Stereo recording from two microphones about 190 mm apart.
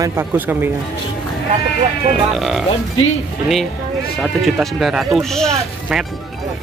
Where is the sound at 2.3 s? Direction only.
Centre (ahead or behind).